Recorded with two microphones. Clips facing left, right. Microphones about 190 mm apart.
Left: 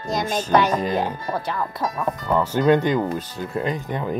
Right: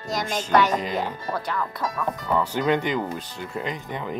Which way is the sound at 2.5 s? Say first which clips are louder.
Left 8 dB; 45° left (ahead or behind).